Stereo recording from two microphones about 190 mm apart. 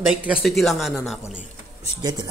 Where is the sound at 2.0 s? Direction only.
20° right (ahead or behind).